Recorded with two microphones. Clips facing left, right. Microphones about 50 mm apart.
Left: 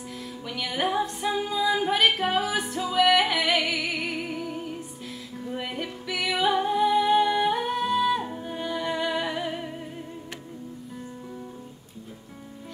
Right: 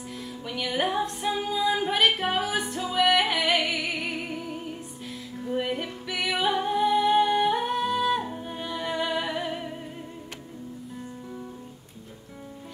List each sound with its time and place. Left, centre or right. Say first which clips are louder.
0.2 s music: right 1 dB; centre